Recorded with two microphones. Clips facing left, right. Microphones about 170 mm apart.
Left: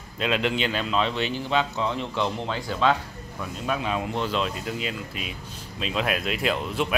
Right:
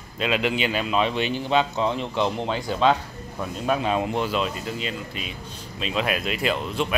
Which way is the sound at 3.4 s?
40° right (ahead or behind).